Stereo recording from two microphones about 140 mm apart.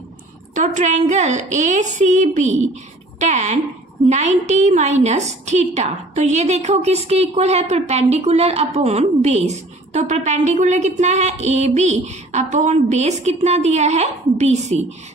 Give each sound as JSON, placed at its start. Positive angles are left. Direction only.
{"t": 0.6, "sound": "a woman's voice", "side_deg": -60}